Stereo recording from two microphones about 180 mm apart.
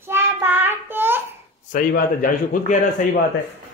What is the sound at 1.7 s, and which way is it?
A man's voice, 50° left (ahead or behind).